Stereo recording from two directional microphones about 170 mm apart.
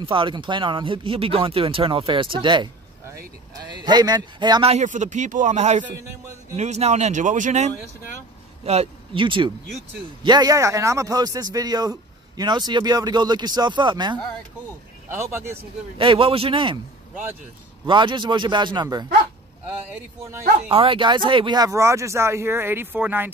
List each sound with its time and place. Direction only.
0.0 s a man's voice: 30° right (ahead or behind); by 7.7 s 45° right (ahead or behind)
8.6 s a man's voice: 35° right (ahead or behind)
15.0 s speech: 15° right (ahead or behind)
16.0 s speech: 35° right (ahead or behind)
17.8 s a man's voice: 30° right (ahead or behind)
19.9 s speech: 15° right (ahead or behind)
20.6 s speech: 35° right (ahead or behind); by 23.3 s 10° right (ahead or behind)